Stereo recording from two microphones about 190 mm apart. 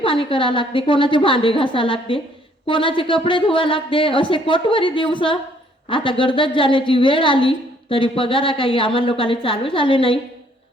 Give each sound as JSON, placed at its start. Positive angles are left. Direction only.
{"t": 0.0, "sound": "a woman's voice", "side_deg": 25}